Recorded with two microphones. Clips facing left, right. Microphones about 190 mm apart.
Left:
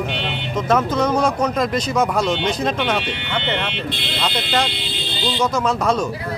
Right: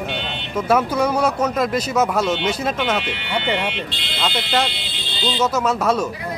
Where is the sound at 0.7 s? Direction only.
10° right (ahead or behind).